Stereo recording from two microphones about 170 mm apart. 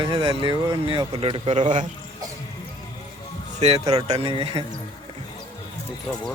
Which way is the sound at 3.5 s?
40° right (ahead or behind).